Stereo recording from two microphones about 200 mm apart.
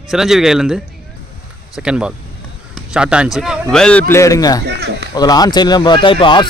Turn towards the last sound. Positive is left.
turn(degrees=25)  # may be behind; listen again after turning